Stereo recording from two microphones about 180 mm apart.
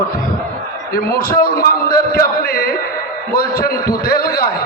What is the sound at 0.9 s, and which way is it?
A man's voice, 55° left (ahead or behind).